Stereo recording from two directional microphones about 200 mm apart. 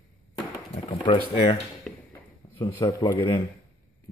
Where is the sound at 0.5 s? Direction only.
25° left (ahead or behind).